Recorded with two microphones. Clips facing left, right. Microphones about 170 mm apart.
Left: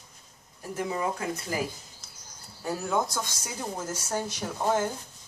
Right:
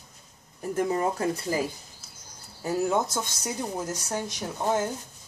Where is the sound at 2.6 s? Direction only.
25° right (ahead or behind).